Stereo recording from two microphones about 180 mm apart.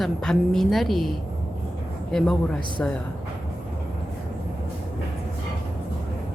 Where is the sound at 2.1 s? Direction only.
5° left (ahead or behind).